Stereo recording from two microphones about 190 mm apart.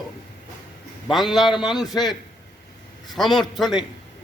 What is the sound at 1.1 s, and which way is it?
Speech, centre (ahead or behind).